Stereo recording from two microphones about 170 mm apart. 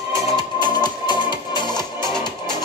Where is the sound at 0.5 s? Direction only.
25° left (ahead or behind).